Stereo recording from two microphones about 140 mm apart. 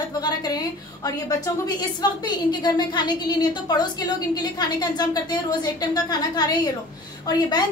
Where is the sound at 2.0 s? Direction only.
30° left (ahead or behind).